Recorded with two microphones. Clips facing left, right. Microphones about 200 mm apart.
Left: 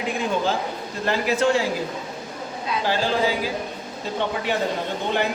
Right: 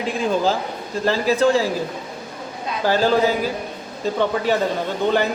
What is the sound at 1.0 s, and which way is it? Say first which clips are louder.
Speech: right 3 dB; 35° right (ahead or behind).